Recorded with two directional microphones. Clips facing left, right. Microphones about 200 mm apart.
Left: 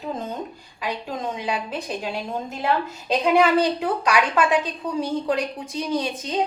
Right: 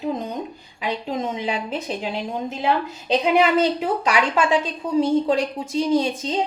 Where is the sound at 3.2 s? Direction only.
20° right (ahead or behind).